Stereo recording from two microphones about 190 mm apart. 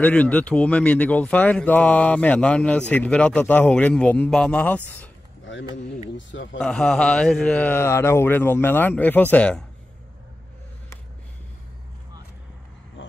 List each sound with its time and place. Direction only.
0.0 s speech: 10° left (ahead or behind)
6.1 s speech: 75° left (ahead or behind)
6.6 s speech: 5° left (ahead or behind)